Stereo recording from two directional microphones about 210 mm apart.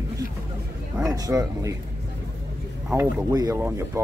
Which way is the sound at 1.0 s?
15° right (ahead or behind).